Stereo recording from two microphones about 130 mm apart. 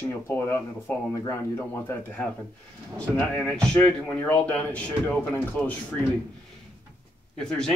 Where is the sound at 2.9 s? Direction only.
10° left (ahead or behind).